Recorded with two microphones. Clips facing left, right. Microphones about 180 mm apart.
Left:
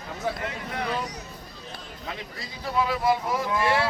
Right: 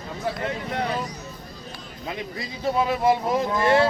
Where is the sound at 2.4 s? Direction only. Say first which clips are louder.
Right 3 dB; 25° right (ahead or behind).